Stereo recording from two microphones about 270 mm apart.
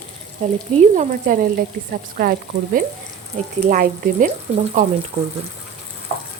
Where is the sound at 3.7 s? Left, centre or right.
Right.